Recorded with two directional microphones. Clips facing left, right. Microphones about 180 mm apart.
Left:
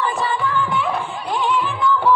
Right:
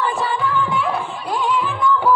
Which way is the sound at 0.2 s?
Centre (ahead or behind).